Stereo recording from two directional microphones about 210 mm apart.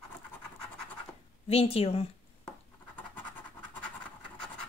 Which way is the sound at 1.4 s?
30° left (ahead or behind).